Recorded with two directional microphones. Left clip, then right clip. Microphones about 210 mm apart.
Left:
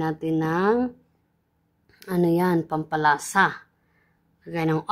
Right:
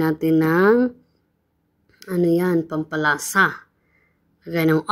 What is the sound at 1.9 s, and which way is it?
Speech, centre (ahead or behind).